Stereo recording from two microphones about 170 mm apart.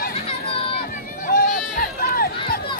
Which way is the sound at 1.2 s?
65° left (ahead or behind).